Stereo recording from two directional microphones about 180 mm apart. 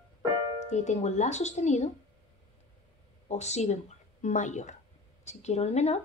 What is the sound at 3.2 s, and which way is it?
A woman's voice, 40° left (ahead or behind).